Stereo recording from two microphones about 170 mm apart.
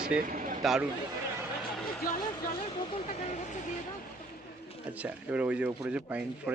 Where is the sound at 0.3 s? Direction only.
50° right (ahead or behind).